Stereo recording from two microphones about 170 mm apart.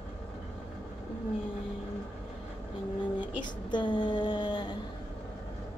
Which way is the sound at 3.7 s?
25° left (ahead or behind).